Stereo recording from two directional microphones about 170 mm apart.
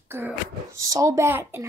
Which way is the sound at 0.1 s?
15° right (ahead or behind).